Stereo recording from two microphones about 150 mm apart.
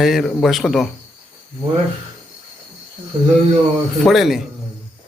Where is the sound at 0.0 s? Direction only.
Centre (ahead or behind).